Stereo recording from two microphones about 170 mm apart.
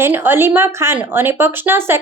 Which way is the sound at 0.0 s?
15° right (ahead or behind).